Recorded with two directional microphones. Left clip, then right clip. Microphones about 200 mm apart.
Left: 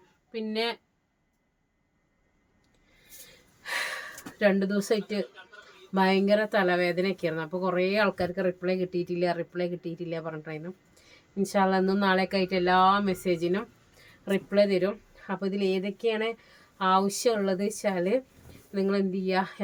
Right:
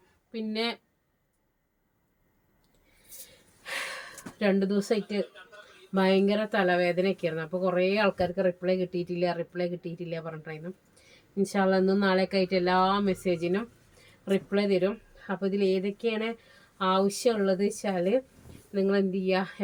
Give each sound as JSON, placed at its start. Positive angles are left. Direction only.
{"t": 0.3, "sound": "speech", "side_deg": 20}
{"t": 3.6, "sound": "a sound", "side_deg": 20}
{"t": 4.4, "sound": "speech", "side_deg": 20}